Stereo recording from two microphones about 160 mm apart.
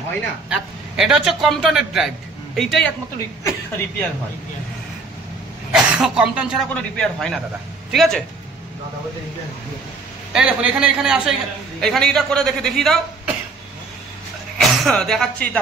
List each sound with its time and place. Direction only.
0.5 s a man's voice: 5° right (ahead or behind)
3.4 s speech: 15° left (ahead or behind)
5.7 s a woman's voice: 5° right (ahead or behind)
10.3 s a woman's voice: 10° right (ahead or behind)
14.6 s speech: centre (ahead or behind)